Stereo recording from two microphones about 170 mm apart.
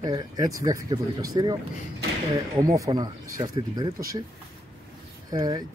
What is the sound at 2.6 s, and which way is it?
Speech, 20° right (ahead or behind).